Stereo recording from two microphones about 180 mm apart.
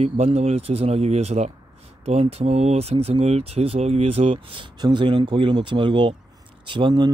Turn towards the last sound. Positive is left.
turn(degrees=-25)  # may be behind; listen again after turning